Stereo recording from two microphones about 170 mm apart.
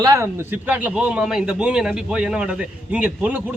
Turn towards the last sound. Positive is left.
turn(degrees=-10)  # may be behind; listen again after turning